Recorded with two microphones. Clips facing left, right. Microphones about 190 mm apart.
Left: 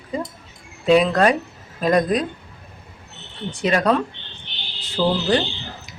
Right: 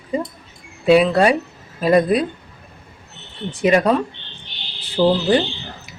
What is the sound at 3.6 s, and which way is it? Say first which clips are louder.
A woman's voice: right 3 dB; 10° right (ahead or behind).